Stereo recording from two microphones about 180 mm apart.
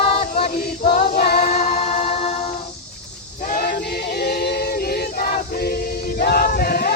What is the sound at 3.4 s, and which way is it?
Choir, 50° left (ahead or behind).